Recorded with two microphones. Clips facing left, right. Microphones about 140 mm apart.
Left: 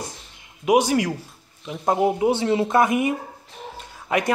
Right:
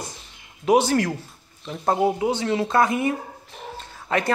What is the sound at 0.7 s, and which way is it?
Speech, 10° left (ahead or behind).